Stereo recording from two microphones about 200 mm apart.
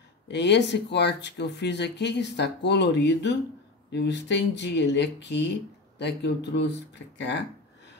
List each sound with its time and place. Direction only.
0.3 s speech: 60° left (ahead or behind)